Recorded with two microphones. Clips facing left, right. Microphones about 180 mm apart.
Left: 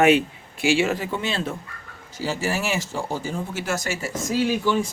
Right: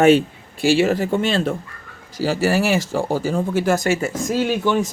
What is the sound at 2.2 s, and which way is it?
Speech, 70° right (ahead or behind).